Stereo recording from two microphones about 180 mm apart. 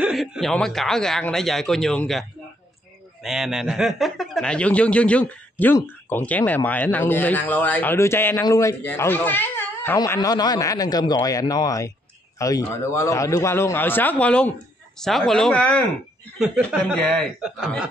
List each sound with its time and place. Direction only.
0.0 s speech: 5° right (ahead or behind)
16.3 s speech: 5° right (ahead or behind)
16.6 s speech: 5° left (ahead or behind)